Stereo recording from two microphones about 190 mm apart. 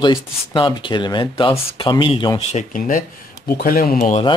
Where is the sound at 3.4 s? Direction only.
55° left (ahead or behind).